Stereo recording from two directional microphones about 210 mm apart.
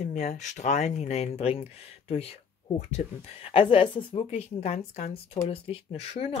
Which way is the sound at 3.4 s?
25° left (ahead or behind).